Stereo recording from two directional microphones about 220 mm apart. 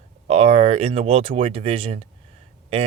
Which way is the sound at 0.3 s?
30° right (ahead or behind).